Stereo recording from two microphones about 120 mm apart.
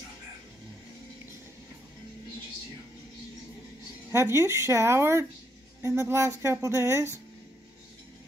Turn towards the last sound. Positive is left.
turn(degrees=-20)  # may be behind; listen again after turning